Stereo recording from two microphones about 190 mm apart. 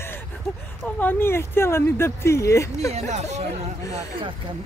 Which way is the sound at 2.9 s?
35° right (ahead or behind).